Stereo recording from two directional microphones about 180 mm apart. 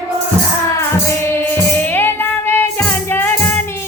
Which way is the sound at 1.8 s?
10° left (ahead or behind).